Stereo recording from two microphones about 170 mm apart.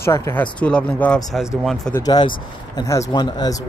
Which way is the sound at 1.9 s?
25° left (ahead or behind).